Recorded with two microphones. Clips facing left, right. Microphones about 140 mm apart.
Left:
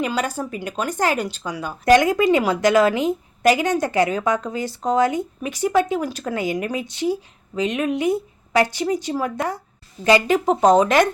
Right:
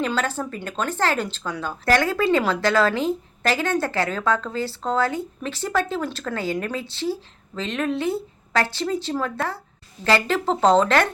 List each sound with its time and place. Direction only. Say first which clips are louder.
0.0 s speech: left 1 dB; 10° left (ahead or behind)